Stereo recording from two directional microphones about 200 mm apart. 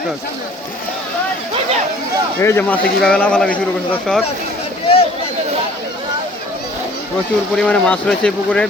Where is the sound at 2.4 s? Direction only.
10° left (ahead or behind).